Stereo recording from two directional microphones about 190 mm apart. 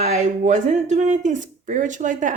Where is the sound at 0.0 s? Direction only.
35° right (ahead or behind).